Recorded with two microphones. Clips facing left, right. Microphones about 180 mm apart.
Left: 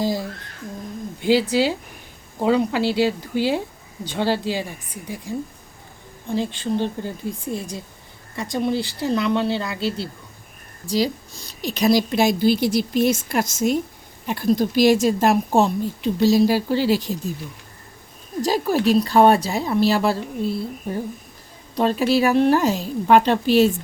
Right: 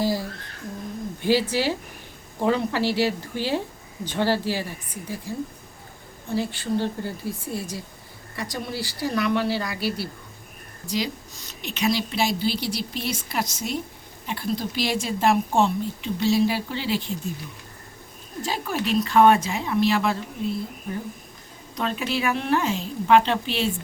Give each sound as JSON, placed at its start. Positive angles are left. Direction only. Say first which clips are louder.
{"t": 0.0, "sound": "speech", "louder": "left 1 dB", "side_deg": 15}
{"t": 6.3, "sound": "a woman's voice", "louder": "left 2 dB", "side_deg": 20}
{"t": 10.8, "sound": "a woman's voice", "louder": "left 6 dB", "side_deg": 35}
{"t": 18.4, "sound": "speech", "louder": "left 8 dB", "side_deg": 40}
{"t": 21.8, "sound": "speech", "louder": "left 8 dB", "side_deg": 35}